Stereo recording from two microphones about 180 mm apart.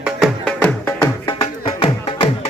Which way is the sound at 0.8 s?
15° left (ahead or behind).